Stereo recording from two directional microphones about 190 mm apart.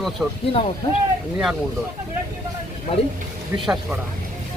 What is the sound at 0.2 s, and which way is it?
Speech, 15° right (ahead or behind).